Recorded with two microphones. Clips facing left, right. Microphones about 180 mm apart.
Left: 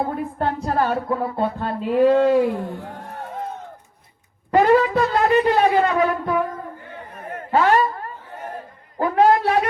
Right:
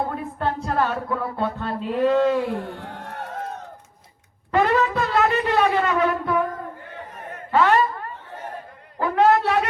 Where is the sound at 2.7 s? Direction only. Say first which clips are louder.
Left 2 dB; 75° right (ahead or behind).